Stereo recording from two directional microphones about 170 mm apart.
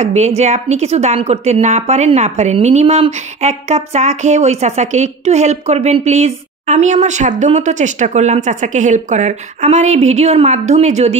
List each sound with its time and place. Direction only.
0.0 s a woman's voice: 40° right (ahead or behind)